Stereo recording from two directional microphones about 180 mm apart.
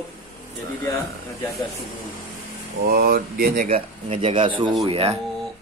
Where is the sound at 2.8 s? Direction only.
55° right (ahead or behind).